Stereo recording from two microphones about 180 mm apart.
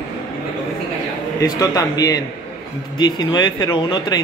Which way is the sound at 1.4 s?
20° left (ahead or behind).